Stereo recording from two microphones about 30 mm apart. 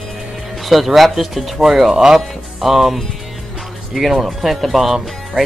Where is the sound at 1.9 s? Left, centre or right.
Centre.